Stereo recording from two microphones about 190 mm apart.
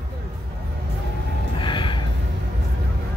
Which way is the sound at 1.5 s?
25° left (ahead or behind).